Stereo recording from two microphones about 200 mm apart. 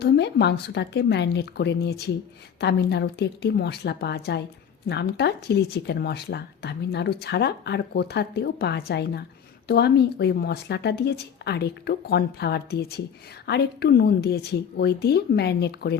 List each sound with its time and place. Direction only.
0.0 s speech: 55° left (ahead or behind)